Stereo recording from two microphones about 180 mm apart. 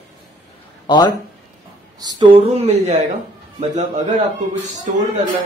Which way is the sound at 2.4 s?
35° right (ahead or behind).